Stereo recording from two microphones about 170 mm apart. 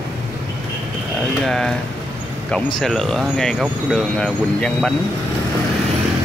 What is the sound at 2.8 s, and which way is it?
Speech, centre (ahead or behind).